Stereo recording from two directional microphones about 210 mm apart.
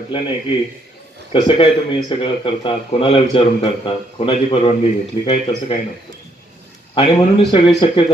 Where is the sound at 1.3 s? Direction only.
20° left (ahead or behind).